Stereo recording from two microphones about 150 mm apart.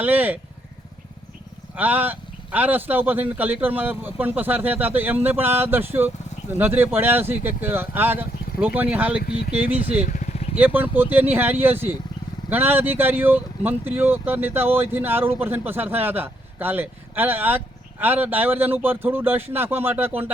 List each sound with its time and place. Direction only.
0.0 s speech: 10° right (ahead or behind)
1.7 s speech: 10° right (ahead or behind)
10.1 s vehicle: 55° left (ahead or behind)
10.6 s speech: 10° right (ahead or behind)